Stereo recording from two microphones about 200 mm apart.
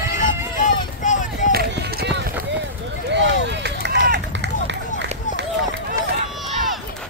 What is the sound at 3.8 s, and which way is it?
Run, 60° right (ahead or behind).